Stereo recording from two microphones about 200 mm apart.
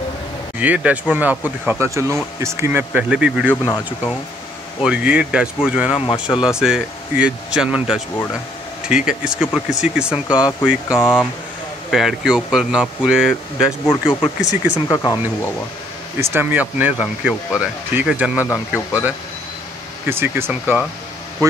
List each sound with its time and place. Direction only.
0.6 s speech: 5° right (ahead or behind)
3.6 s speech: 15° left (ahead or behind)
4.8 s speech: 5° right (ahead or behind)
10.9 s speech: 10° left (ahead or behind)
11.9 s speech: centre (ahead or behind)
13.8 s speech: 20° left (ahead or behind)
14.4 s speech: 35° left (ahead or behind)
14.9 s speech: 15° left (ahead or behind)
16.2 s speech: 10° right (ahead or behind)